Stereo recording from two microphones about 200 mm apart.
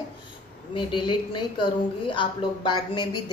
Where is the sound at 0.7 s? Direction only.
25° left (ahead or behind).